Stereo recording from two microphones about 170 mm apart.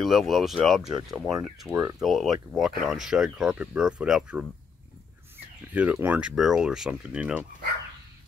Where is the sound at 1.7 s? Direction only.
15° right (ahead or behind).